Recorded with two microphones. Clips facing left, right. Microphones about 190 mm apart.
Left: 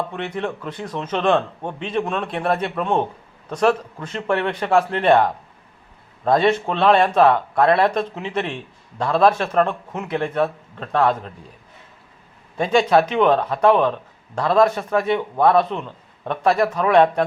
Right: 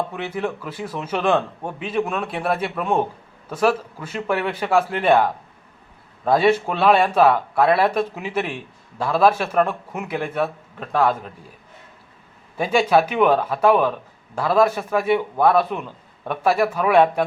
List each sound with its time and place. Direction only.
0.1 s speech: 5° right (ahead or behind)
12.5 s speech: 5° right (ahead or behind)